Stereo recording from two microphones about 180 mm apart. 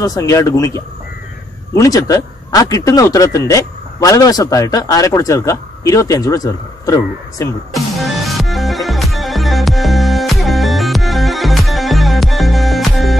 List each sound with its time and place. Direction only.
0.0 s speech: 20° left (ahead or behind)
7.7 s music: centre (ahead or behind)